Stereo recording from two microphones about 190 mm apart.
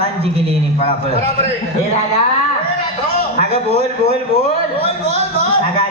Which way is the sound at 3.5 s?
35° right (ahead or behind).